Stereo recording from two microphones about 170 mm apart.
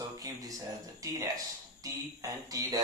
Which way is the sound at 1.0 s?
20° right (ahead or behind).